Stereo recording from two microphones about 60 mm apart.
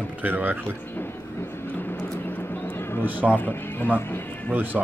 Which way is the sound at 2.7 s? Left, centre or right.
Left.